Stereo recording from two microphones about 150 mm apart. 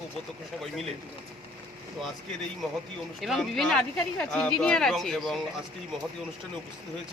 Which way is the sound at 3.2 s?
Centre (ahead or behind).